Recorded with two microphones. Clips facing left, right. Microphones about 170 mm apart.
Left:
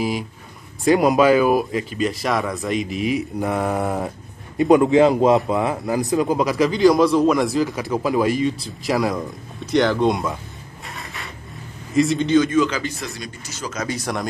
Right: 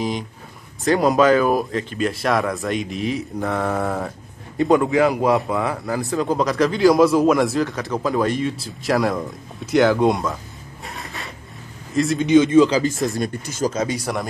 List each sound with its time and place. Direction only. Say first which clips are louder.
1.1 s speech: left 1 dB; 10° left (ahead or behind)
3.3 s a man's voice: left 1 dB; 15° left (ahead or behind)
6.2 s speech: even; 5° left (ahead or behind)
10.9 s a sound: right 1 dB; centre (ahead or behind)
11.9 s speech: left 2 dB; centre (ahead or behind)
12.3 s speech: right 4 dB; 25° right (ahead or behind)
12.9 s speech: right 9 dB; 45° right (ahead or behind)
13.8 s speech: right 1 dB; 10° right (ahead or behind)